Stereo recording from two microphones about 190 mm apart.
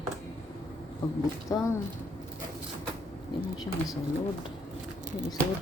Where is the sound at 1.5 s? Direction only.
15° left (ahead or behind).